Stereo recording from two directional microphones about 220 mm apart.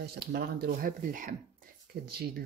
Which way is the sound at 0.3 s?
45° right (ahead or behind).